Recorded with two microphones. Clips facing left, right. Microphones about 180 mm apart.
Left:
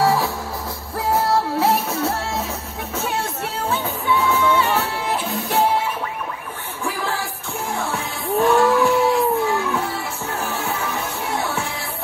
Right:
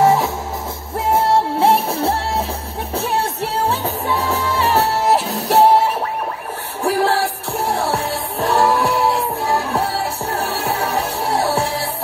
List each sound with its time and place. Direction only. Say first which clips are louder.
0.0 s music: right 4 dB; 20° right (ahead or behind)